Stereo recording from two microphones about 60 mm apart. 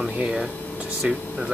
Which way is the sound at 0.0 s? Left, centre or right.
Centre.